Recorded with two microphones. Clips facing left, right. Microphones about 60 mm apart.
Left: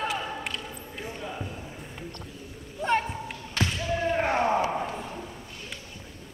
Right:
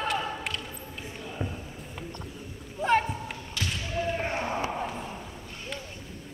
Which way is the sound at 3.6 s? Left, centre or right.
Left.